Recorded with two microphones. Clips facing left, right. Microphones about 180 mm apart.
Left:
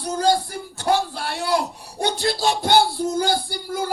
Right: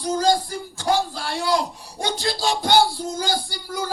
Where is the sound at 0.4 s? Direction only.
60° left (ahead or behind).